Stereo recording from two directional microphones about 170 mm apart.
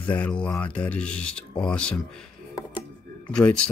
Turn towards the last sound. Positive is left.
turn(degrees=5)  # may be behind; listen again after turning